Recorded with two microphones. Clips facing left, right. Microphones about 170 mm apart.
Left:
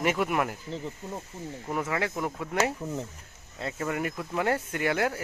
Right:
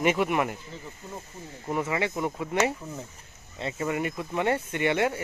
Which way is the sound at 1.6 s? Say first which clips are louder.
Right 2 dB; centre (ahead or behind).